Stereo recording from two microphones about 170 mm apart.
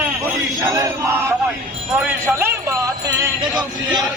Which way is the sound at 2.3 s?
15° right (ahead or behind).